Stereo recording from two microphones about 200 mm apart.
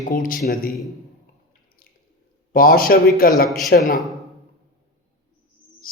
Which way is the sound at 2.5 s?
45° left (ahead or behind).